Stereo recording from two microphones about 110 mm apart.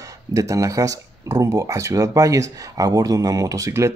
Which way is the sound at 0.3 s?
30° right (ahead or behind).